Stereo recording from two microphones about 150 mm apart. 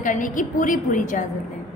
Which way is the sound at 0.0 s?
60° left (ahead or behind).